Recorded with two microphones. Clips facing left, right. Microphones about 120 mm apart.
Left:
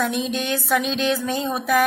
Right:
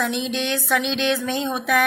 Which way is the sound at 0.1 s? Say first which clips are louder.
Even; 45° left (ahead or behind).